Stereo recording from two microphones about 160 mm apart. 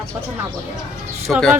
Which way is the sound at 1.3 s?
Centre (ahead or behind).